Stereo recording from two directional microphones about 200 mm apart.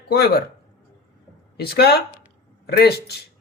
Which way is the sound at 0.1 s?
55° left (ahead or behind).